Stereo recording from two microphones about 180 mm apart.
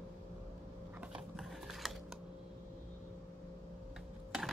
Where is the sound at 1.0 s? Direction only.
5° right (ahead or behind).